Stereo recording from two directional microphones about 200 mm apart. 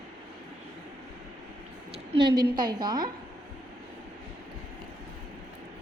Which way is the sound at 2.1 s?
25° right (ahead or behind).